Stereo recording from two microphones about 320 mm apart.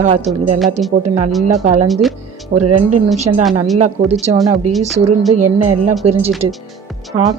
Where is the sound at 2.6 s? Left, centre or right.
Right.